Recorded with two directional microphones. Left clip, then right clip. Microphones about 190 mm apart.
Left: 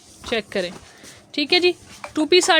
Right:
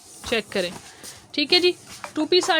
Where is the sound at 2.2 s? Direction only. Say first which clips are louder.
Left 4 dB; 30° left (ahead or behind).